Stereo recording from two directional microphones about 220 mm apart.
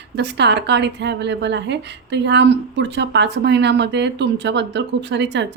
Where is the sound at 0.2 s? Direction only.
50° right (ahead or behind).